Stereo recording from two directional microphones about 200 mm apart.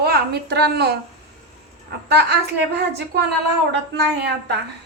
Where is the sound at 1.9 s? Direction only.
55° right (ahead or behind).